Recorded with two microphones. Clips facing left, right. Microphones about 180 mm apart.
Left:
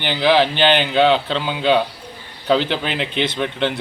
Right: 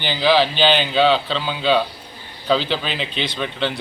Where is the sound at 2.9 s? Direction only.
60° left (ahead or behind).